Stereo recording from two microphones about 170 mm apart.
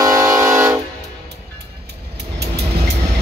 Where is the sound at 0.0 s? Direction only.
20° right (ahead or behind).